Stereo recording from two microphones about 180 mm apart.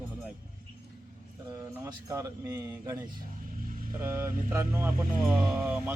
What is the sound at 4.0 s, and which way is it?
Speech, 10° right (ahead or behind).